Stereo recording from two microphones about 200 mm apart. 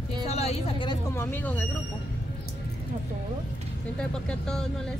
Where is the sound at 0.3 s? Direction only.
30° left (ahead or behind).